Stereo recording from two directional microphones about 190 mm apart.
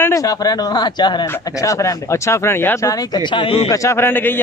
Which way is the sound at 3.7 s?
15° left (ahead or behind).